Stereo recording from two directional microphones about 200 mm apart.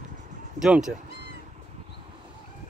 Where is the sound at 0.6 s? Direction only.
5° right (ahead or behind).